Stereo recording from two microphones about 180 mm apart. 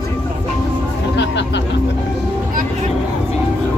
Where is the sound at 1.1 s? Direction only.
80° left.